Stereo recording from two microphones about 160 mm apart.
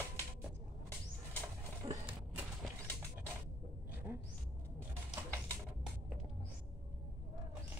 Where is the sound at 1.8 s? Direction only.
30° right (ahead or behind).